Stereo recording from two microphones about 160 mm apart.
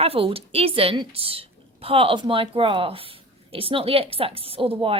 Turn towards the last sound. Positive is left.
turn(degrees=-35)  # may be behind; listen again after turning